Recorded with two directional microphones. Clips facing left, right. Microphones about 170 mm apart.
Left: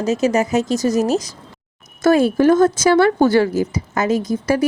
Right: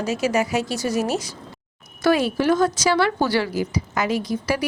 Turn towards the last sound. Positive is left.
turn(degrees=45)  # may be behind; listen again after turning